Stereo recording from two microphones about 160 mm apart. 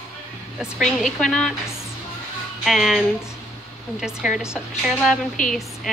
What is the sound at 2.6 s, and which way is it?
A woman's voice, centre (ahead or behind).